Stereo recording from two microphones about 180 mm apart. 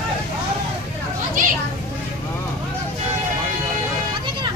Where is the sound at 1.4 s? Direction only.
45° right (ahead or behind).